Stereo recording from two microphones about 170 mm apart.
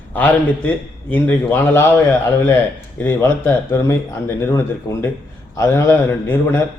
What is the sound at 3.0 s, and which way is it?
A man's voice, 15° left (ahead or behind).